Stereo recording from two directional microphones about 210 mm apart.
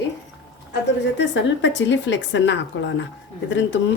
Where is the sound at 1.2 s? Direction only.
60° left (ahead or behind).